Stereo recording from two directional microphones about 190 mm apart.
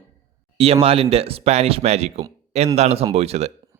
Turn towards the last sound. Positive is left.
turn(degrees=-35)  # may be behind; listen again after turning